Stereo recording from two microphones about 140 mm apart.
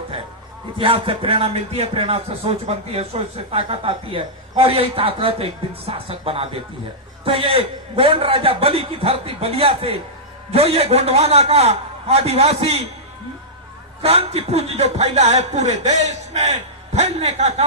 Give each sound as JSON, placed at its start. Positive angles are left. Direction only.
{"t": 0.8, "sound": "speech", "side_deg": -40}
{"t": 14.0, "sound": "speech", "side_deg": -45}